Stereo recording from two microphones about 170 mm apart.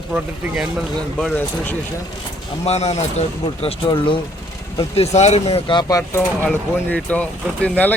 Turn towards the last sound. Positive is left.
turn(degrees=10)  # may be behind; listen again after turning